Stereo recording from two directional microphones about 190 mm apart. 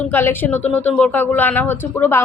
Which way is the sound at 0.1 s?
10° left (ahead or behind).